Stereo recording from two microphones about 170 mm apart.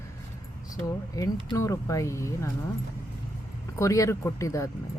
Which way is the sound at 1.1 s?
20° left (ahead or behind).